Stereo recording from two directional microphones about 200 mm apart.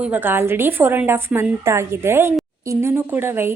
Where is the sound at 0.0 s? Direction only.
10° right (ahead or behind).